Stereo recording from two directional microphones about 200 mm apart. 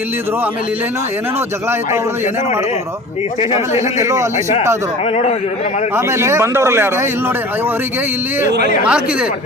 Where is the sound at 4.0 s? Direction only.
15° right (ahead or behind).